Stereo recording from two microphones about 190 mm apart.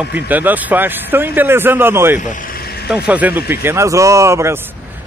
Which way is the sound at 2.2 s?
45° left (ahead or behind).